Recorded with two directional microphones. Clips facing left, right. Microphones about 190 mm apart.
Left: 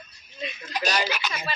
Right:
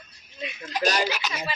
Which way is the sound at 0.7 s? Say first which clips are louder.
Right 2 dB; 45° right (ahead or behind).